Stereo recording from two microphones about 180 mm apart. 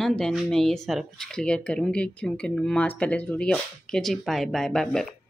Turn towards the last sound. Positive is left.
turn(degrees=5)  # may be behind; listen again after turning